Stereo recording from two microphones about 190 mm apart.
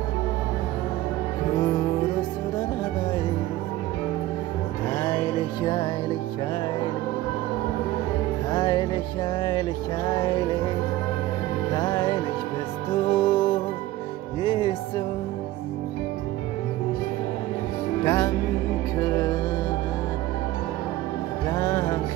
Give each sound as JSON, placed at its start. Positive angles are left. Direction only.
{"t": 8.5, "sound": "music", "side_deg": 20}
{"t": 11.7, "sound": "music", "side_deg": 20}
{"t": 18.0, "sound": "music", "side_deg": 15}
{"t": 21.5, "sound": "music", "side_deg": 20}